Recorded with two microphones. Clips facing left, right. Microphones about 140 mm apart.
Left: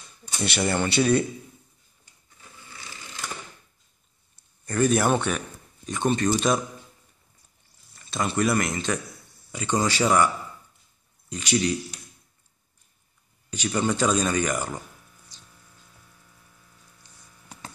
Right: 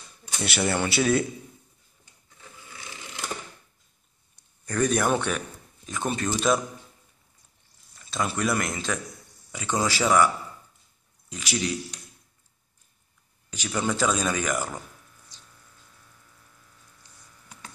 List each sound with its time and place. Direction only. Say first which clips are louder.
0.4 s speech: left 1 dB; 5° right (ahead or behind)
4.4 s a man's voice: left 2 dB; 5° left (ahead or behind)
8.1 s speech: left 3 dB; centre (ahead or behind)
13.5 s speech: left 3 dB; centre (ahead or behind)